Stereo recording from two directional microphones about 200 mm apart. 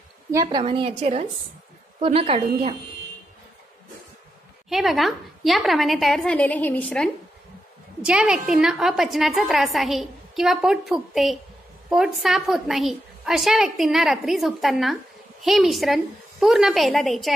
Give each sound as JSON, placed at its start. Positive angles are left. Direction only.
{"t": 0.3, "sound": "a woman's voice", "side_deg": -20}
{"t": 4.6, "sound": "a woman's voice", "side_deg": 0}
{"t": 8.0, "sound": "a woman's voice", "side_deg": -5}